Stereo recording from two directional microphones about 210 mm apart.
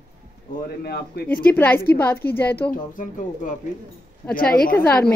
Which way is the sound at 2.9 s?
40° left (ahead or behind).